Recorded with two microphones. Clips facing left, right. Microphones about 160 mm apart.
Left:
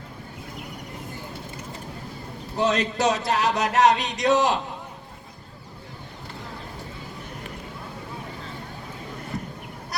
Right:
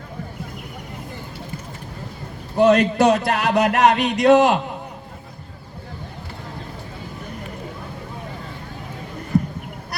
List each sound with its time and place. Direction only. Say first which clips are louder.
2.6 s a man's voice: right 8 dB; 60° right (ahead or behind)
9.3 s bleat: right 14 dB; 65° right (ahead or behind)